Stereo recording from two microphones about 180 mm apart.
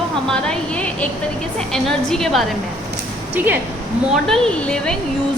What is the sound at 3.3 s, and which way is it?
Speech, 10° right (ahead or behind).